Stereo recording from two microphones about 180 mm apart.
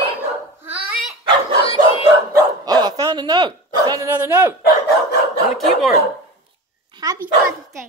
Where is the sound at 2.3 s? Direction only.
20° right (ahead or behind).